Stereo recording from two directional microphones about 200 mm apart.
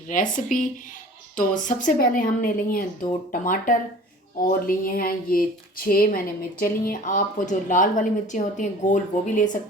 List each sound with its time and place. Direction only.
0.1 s speech: 40° left (ahead or behind)